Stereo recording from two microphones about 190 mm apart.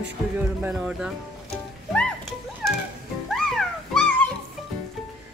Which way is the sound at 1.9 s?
5° left (ahead or behind).